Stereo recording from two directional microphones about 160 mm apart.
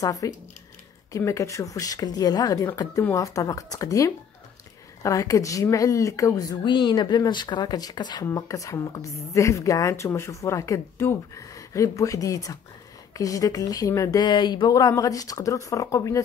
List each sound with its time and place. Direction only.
0.0 s speech: 20° left (ahead or behind)